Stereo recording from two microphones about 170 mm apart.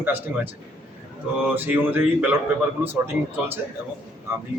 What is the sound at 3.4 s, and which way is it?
Speech, 5° right (ahead or behind).